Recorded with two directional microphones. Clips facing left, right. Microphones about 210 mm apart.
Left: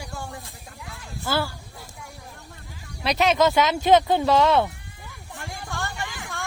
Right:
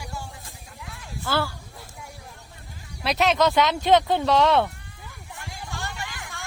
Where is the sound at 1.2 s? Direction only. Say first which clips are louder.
Even; 10° left (ahead or behind).